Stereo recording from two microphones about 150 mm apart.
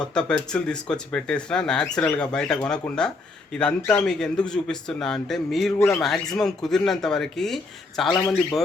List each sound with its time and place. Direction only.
0.1 s speech: 5° left (ahead or behind)